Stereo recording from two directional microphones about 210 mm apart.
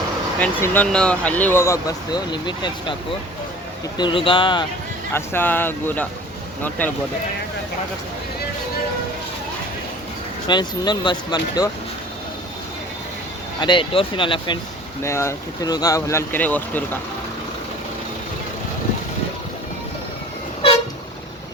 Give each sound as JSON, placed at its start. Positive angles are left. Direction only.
{"t": 0.3, "sound": "speech", "side_deg": 10}
{"t": 3.9, "sound": "speech", "side_deg": 25}
{"t": 5.1, "sound": "speech", "side_deg": 10}
{"t": 10.4, "sound": "speech", "side_deg": 20}
{"t": 13.6, "sound": "speech", "side_deg": 20}
{"t": 15.0, "sound": "speech", "side_deg": 15}